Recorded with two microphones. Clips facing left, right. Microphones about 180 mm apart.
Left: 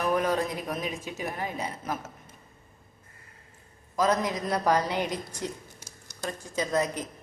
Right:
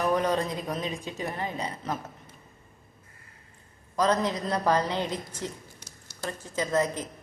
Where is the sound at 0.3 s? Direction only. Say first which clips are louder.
Even; 10° left (ahead or behind).